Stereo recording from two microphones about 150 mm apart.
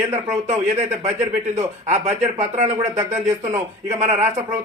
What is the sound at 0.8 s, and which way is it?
Speech, 50° right (ahead or behind).